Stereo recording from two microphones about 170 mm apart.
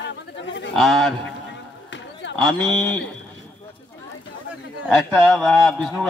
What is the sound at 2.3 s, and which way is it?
Speech, 5° left (ahead or behind).